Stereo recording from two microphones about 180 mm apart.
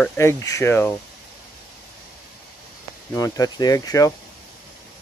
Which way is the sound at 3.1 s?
20° left (ahead or behind).